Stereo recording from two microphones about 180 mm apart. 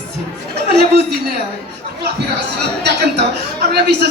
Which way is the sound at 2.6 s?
65° right (ahead or behind).